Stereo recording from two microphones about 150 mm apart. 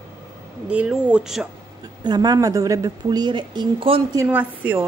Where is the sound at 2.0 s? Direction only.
25° right (ahead or behind).